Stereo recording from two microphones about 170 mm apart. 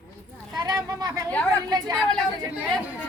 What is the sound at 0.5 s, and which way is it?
Speech, 25° right (ahead or behind).